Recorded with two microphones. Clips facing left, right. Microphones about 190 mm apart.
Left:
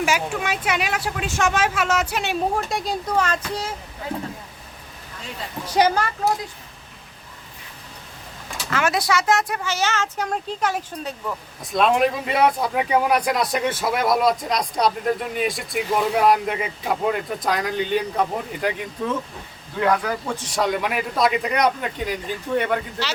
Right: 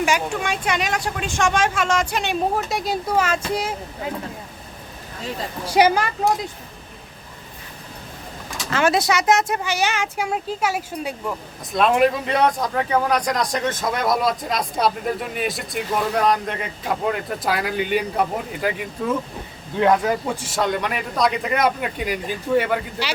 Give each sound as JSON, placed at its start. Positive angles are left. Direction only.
{"t": 0.0, "sound": "speech", "side_deg": 5}
{"t": 5.6, "sound": "speech", "side_deg": -10}
{"t": 8.7, "sound": "speech", "side_deg": -25}
{"t": 19.8, "sound": "speech", "side_deg": -20}
{"t": 20.6, "sound": "speech", "side_deg": 0}